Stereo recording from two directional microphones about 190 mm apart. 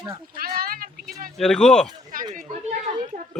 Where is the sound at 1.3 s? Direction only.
5° left (ahead or behind).